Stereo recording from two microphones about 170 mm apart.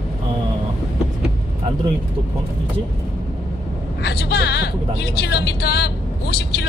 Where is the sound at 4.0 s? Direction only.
70° left (ahead or behind).